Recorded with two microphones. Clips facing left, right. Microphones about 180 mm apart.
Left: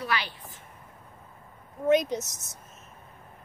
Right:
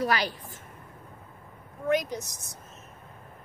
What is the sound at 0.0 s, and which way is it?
Speech, 40° right (ahead or behind).